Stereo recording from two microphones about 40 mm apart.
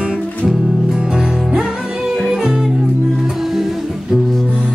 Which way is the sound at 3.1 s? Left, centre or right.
Centre.